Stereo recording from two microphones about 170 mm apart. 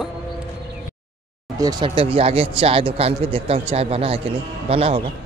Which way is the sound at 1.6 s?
25° right (ahead or behind).